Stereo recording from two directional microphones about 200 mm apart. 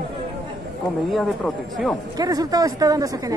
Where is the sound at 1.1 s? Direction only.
Centre (ahead or behind).